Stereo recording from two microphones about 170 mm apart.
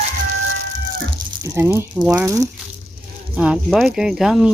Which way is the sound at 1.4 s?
15° right (ahead or behind).